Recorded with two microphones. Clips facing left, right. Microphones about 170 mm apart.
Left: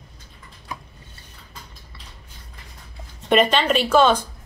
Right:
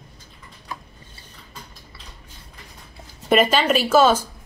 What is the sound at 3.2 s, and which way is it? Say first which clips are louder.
Speech: even; 5° right (ahead or behind).